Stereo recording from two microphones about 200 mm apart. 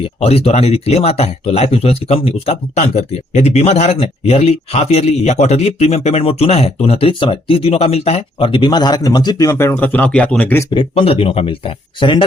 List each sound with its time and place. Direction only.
0.0 s speech: 30° left (ahead or behind); by 10.7 s 10° left (ahead or behind)
10.7 s speech: 25° left (ahead or behind)